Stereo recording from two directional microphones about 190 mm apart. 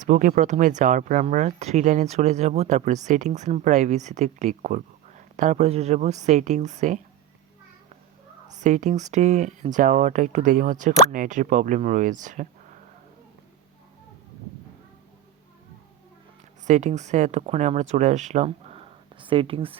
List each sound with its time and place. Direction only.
0.0 s speech: 45° right (ahead or behind)
8.5 s speech: 40° right (ahead or behind)
16.6 s speech: 40° right (ahead or behind)